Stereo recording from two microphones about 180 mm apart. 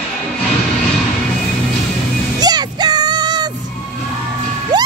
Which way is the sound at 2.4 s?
20° right (ahead or behind).